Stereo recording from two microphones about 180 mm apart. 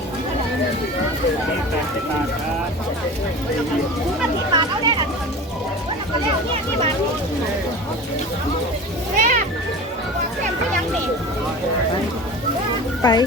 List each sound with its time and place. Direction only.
4.5 s chatter: 25° right (ahead or behind)
9.1 s cat: 45° right (ahead or behind)
13.0 s speech: 20° left (ahead or behind)